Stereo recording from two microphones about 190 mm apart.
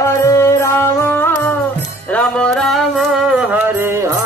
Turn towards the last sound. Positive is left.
turn(degrees=-15)  # may be behind; listen again after turning